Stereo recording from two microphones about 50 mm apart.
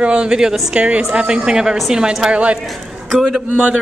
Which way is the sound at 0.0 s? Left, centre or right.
Right.